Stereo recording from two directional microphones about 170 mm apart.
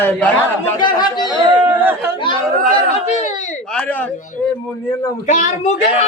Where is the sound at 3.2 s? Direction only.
45° left (ahead or behind).